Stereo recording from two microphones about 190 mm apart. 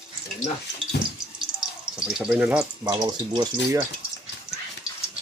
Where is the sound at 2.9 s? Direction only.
25° right (ahead or behind).